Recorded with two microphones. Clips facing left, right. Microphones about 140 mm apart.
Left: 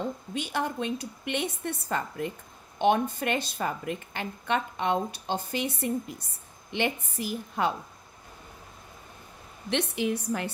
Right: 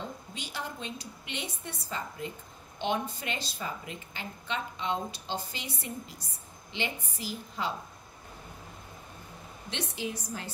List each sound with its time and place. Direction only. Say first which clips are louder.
0.3 s a woman's voice: left 9 dB; 55° left (ahead or behind)
9.9 s a woman's voice: left 8 dB; 60° left (ahead or behind)